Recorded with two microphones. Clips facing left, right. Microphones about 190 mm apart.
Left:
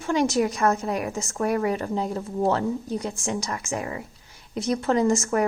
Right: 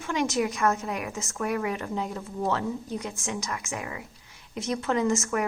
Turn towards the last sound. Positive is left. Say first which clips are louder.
# left 4 dB
turn(degrees=35)  # may be behind; listen again after turning